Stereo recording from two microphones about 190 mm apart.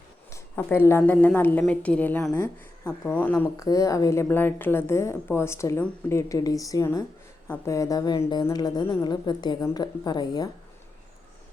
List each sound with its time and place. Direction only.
0.3 s a woman's voice: 15° left (ahead or behind)